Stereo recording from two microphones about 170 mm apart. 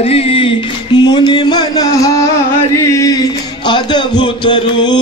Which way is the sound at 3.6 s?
25° left (ahead or behind).